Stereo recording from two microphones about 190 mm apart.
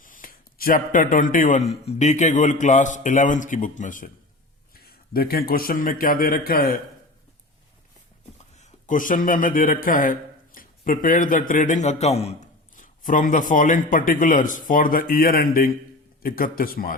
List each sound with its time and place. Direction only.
0.0 s a man's voice: 45° left (ahead or behind)
8.5 s a man's voice: 45° left (ahead or behind)